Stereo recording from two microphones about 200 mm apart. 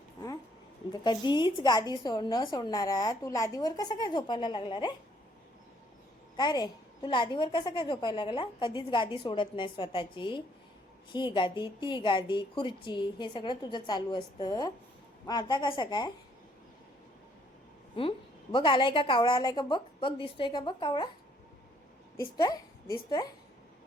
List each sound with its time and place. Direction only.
1.0 s a woman's voice: 20° left (ahead or behind)
6.3 s a woman's voice: 20° left (ahead or behind)
18.5 s a woman's voice: 25° left (ahead or behind)
22.2 s a woman's voice: 20° left (ahead or behind)